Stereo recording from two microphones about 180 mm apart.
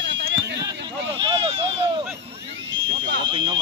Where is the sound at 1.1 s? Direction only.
25° right (ahead or behind).